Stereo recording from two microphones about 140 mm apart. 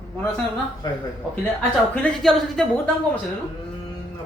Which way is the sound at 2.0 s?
Centre (ahead or behind).